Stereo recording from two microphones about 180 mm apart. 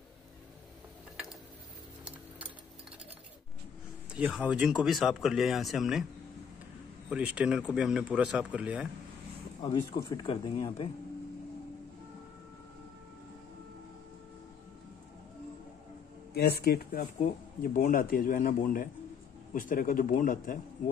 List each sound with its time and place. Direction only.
4.1 s speech: 5° right (ahead or behind)
7.1 s speech: 5° right (ahead or behind)
9.6 s speech: 30° left (ahead or behind)
16.3 s speech: 60° left (ahead or behind)